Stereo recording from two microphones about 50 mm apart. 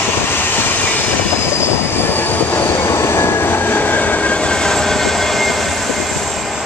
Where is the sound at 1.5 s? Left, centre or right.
Left.